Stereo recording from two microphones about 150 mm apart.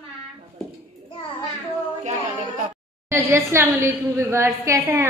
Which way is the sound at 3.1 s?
15° right (ahead or behind).